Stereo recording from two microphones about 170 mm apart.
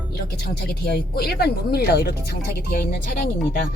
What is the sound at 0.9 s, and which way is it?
Speech, 65° left (ahead or behind).